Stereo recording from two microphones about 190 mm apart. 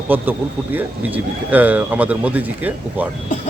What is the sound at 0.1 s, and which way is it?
Speech, 10° right (ahead or behind).